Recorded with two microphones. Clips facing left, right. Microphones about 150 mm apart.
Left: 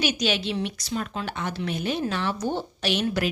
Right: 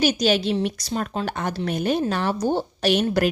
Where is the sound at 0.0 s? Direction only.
40° right (ahead or behind).